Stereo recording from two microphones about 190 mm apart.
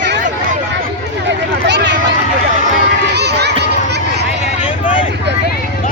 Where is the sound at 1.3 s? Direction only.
65° right (ahead or behind).